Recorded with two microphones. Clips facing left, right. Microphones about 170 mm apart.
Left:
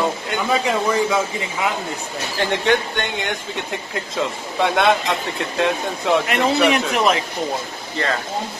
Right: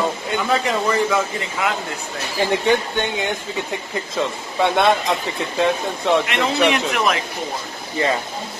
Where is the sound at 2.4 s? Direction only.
Centre (ahead or behind).